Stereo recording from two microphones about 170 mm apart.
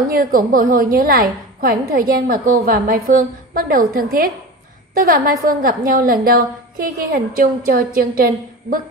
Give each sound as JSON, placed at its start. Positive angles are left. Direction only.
{"t": 0.1, "sound": "a woman's voice", "side_deg": -55}
{"t": 6.2, "sound": "a sound", "side_deg": -60}
{"t": 7.3, "sound": "a woman's voice", "side_deg": -55}